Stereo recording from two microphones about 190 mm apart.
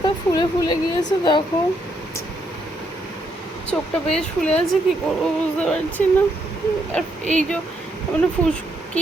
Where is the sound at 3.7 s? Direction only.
5° left (ahead or behind).